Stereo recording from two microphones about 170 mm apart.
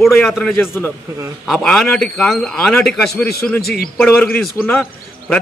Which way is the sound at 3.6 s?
65° left (ahead or behind).